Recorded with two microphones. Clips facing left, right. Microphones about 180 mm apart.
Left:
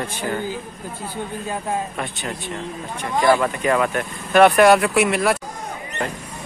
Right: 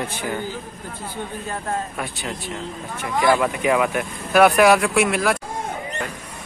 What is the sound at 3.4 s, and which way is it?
Speech, 10° right (ahead or behind).